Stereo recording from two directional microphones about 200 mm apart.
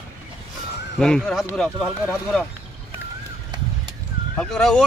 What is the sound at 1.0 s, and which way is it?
Speech, 5° left (ahead or behind).